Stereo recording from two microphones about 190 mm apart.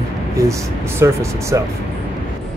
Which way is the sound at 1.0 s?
15° right (ahead or behind).